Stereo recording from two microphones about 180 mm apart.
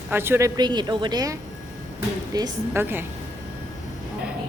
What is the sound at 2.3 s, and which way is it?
Speech, 15° right (ahead or behind).